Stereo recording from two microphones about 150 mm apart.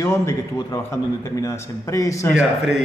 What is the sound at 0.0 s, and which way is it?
A man's voice, 20° left (ahead or behind).